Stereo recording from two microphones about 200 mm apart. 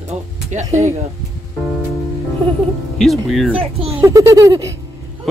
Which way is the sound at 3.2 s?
Centre (ahead or behind).